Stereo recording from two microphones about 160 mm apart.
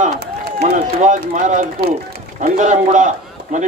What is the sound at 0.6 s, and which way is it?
A man's voice, 45° right (ahead or behind).